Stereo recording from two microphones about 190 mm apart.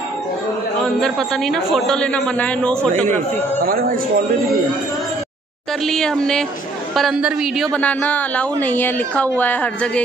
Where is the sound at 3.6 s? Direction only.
50° right (ahead or behind).